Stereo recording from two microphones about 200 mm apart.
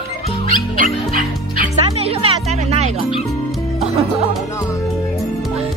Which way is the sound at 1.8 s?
30° right (ahead or behind).